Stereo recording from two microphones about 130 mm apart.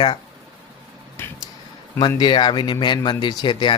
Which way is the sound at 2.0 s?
35° left (ahead or behind).